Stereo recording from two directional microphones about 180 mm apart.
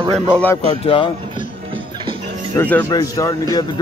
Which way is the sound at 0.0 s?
25° right (ahead or behind).